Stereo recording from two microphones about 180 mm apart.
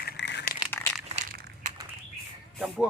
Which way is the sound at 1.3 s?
55° right (ahead or behind).